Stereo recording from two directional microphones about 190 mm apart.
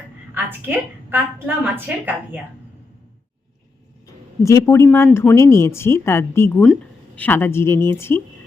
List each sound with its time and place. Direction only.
0.3 s a woman's voice: 10° right (ahead or behind)
4.0 s a woman's voice: 15° left (ahead or behind)